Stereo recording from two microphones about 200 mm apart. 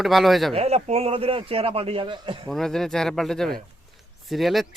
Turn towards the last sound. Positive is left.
turn(degrees=0)  # may be behind; listen again after turning